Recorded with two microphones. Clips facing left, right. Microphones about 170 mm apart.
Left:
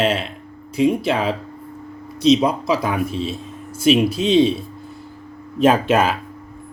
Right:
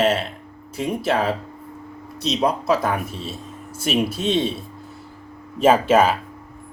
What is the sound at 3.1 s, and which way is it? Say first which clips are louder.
Speech: left 7 dB; 90° left.